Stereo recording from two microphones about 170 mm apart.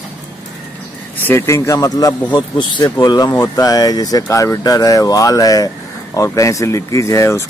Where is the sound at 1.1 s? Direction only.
15° left (ahead or behind).